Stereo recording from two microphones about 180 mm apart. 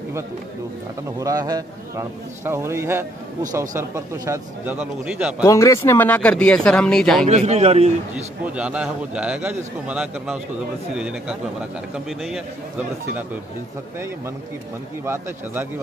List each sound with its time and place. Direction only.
1.2 s a man's voice: 20° right (ahead or behind)
5.4 s speech: 15° left (ahead or behind)
7.2 s a man's voice: 40° right (ahead or behind)
8.1 s a man's voice: 5° right (ahead or behind)